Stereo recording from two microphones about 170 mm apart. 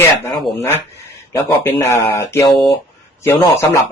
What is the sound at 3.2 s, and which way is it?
Speech, 15° left (ahead or behind).